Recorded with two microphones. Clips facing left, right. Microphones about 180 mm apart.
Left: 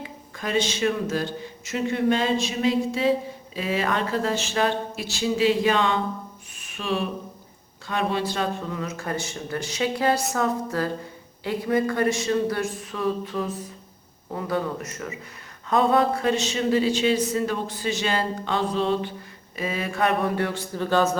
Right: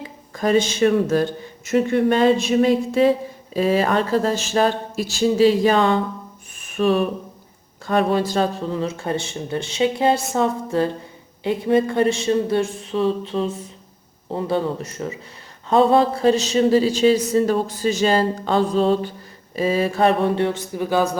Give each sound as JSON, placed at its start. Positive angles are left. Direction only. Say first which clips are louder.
{"t": 0.3, "sound": "a man's voice", "louder": "right 7 dB", "side_deg": -45}
{"t": 3.5, "sound": "a man's voice", "louder": "right 7 dB", "side_deg": -40}
{"t": 8.7, "sound": "a woman's voice", "louder": "right 6 dB", "side_deg": -30}